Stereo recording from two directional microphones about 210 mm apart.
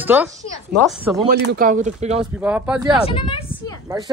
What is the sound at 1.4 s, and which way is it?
Speech, 45° right (ahead or behind).